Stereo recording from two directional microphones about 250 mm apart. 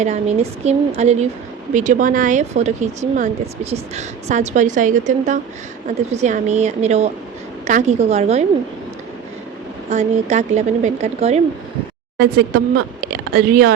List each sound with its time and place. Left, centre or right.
0.6 s speech: right
9.9 s speech: right
12.1 s speech: right